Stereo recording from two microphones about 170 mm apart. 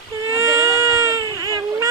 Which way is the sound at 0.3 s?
15° right (ahead or behind).